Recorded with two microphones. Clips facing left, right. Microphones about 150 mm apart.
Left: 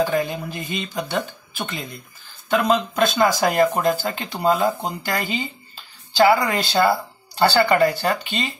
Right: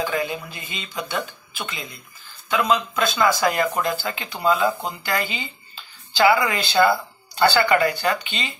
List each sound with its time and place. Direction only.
0.0 s speech: 45° left (ahead or behind)
2.5 s speech: 45° left (ahead or behind)